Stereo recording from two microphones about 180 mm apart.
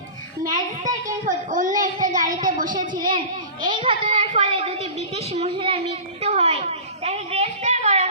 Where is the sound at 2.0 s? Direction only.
45° right (ahead or behind).